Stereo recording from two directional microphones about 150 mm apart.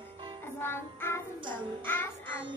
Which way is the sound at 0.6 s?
15° left (ahead or behind).